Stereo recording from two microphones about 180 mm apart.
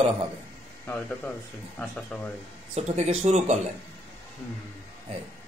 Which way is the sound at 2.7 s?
40° right (ahead or behind).